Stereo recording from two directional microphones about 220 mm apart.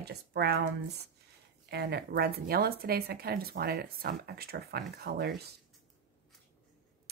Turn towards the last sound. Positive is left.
turn(degrees=-45)  # may be behind; listen again after turning